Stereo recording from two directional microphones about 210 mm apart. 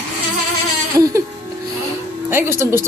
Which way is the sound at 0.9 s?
15° right (ahead or behind).